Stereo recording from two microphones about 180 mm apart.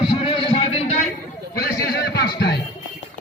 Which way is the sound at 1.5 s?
60° left (ahead or behind).